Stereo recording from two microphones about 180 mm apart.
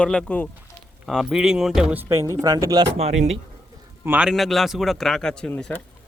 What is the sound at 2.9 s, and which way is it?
Speech, 35° right (ahead or behind).